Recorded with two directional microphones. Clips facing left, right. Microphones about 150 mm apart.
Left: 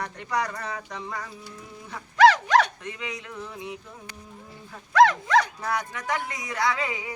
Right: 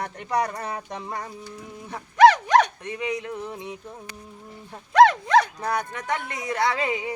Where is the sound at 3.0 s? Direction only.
40° right (ahead or behind).